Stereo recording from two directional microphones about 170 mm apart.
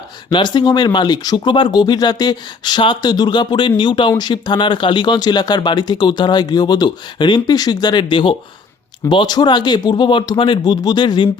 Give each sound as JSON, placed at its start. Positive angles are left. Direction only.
{"t": 0.3, "sound": "speech", "side_deg": 25}